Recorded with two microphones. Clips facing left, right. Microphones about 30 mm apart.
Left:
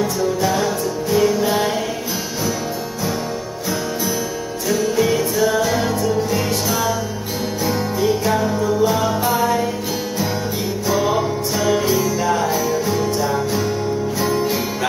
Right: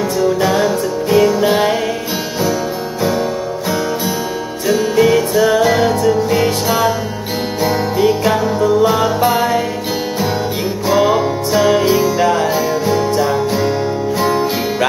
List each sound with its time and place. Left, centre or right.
0.2 s music: right
4.6 s music: right
10.9 s music: right